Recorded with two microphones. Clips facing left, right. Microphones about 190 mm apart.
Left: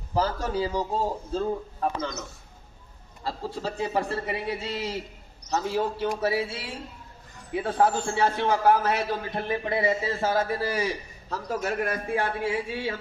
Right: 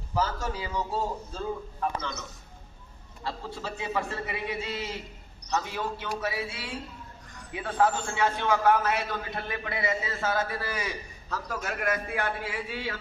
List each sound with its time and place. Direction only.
0.1 s a man's voice: 35° left (ahead or behind)
3.3 s a man's voice: 40° left (ahead or behind)